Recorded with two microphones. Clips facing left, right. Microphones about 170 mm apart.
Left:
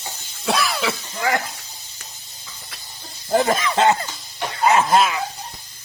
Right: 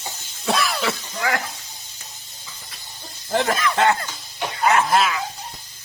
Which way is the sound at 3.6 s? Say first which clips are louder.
Left 1 dB; 20° left (ahead or behind).